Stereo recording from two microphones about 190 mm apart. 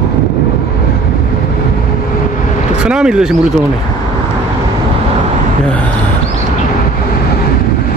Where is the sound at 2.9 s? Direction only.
5° right (ahead or behind).